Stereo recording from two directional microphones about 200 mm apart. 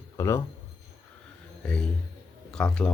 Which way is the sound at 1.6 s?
5° left (ahead or behind).